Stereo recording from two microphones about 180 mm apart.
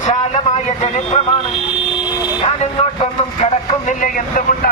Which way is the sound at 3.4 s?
40° left (ahead or behind).